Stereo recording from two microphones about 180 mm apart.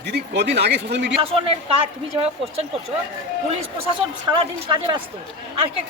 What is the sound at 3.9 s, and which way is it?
A woman's voice, 30° right (ahead or behind).